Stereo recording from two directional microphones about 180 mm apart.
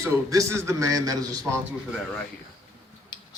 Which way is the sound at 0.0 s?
15° right (ahead or behind).